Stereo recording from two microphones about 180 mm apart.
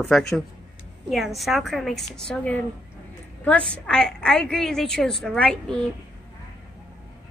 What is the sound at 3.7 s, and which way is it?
A woman's voice, 5° left (ahead or behind).